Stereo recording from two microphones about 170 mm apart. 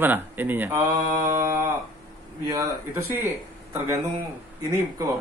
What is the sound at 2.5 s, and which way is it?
Speech, 20° right (ahead or behind).